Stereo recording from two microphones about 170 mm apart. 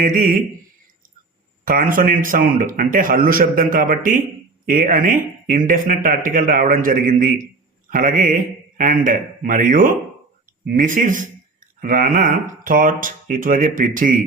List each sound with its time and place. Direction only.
0.0 s speech: 50° right (ahead or behind)
1.6 s speech: 55° right (ahead or behind)